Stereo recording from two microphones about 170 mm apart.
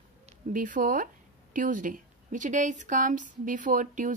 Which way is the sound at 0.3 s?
50° right (ahead or behind).